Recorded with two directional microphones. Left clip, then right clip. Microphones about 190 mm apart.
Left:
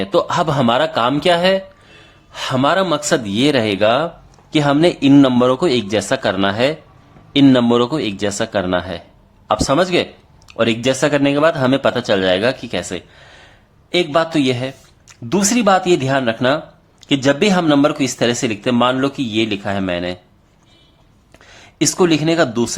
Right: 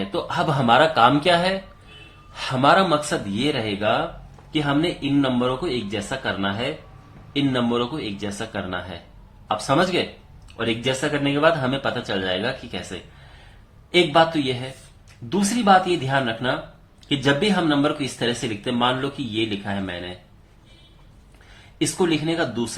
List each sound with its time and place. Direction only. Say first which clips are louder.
0.1 s speech: left 8 dB; 45° left (ahead or behind)
13.9 s speech: left 2 dB; 45° left (ahead or behind)
21.8 s speech: left 7 dB; 45° left (ahead or behind)